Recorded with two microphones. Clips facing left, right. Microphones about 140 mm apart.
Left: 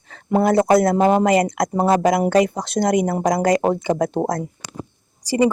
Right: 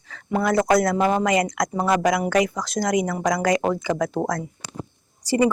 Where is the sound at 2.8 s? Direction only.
60° left (ahead or behind).